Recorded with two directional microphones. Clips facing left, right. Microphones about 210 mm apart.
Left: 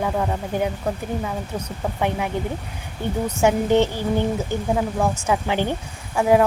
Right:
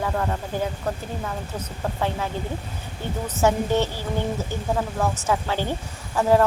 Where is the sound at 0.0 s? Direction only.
15° left (ahead or behind).